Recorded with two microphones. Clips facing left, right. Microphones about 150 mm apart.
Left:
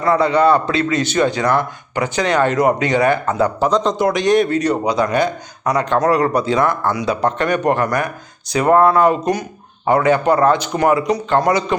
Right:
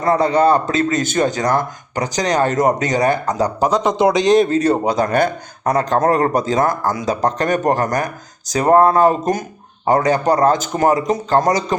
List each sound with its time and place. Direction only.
0.0 s speech: 45° right (ahead or behind)
3.7 s speech: 10° right (ahead or behind)
3.9 s speech: 20° right (ahead or behind)
4.9 s speech: 50° right (ahead or behind)